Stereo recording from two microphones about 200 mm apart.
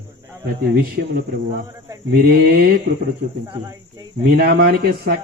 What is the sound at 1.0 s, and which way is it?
Speech, 50° right (ahead or behind).